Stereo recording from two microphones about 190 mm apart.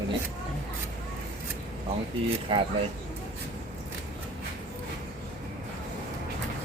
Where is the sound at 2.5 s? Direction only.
25° right (ahead or behind).